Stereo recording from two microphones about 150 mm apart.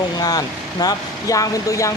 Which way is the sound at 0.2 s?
25° left (ahead or behind).